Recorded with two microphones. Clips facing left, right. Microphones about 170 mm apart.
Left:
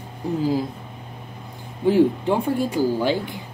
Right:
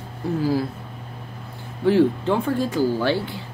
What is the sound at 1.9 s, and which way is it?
Speech, 15° left (ahead or behind).